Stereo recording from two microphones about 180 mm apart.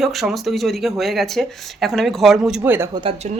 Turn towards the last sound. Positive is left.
turn(degrees=-30)  # may be behind; listen again after turning